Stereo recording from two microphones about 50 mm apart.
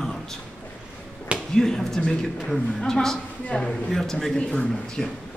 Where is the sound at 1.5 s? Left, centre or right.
Centre.